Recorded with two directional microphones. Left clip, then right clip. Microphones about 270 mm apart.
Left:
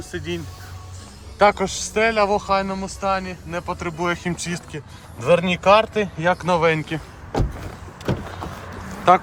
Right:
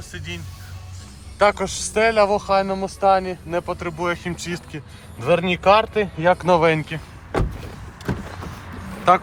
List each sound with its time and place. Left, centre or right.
0.1 s a man's voice: left; by 7.0 s centre